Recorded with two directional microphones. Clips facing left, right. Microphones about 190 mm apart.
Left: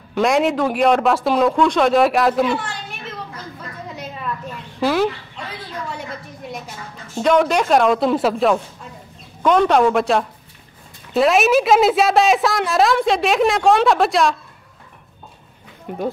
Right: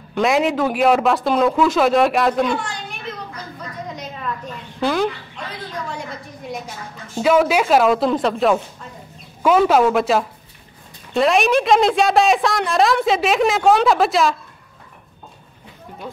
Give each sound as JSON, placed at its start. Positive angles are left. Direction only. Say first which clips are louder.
{"t": 0.1, "sound": "a woman's voice", "louder": "left 1 dB", "side_deg": 0}
{"t": 3.9, "sound": "a sound", "louder": "even", "side_deg": 5}
{"t": 4.7, "sound": "a woman's voice", "louder": "left 2 dB", "side_deg": 5}
{"t": 7.2, "sound": "a woman's voice", "louder": "even", "side_deg": -5}
{"t": 15.9, "sound": "speech", "louder": "left 11 dB", "side_deg": 65}